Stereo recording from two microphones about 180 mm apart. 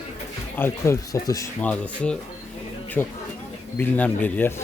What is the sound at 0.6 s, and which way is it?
Speech, 15° left (ahead or behind).